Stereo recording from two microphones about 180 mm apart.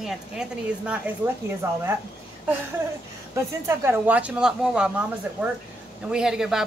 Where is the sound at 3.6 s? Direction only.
15° right (ahead or behind).